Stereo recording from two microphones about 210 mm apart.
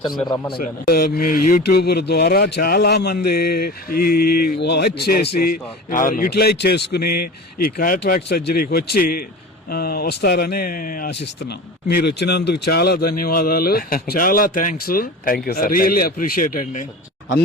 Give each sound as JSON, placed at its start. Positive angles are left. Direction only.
{"t": 0.5, "sound": "a man's voice", "side_deg": 45}